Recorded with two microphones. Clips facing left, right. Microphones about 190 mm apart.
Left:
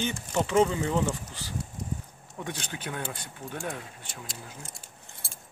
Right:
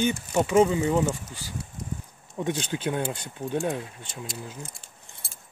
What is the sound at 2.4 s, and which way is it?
Speech, 20° right (ahead or behind).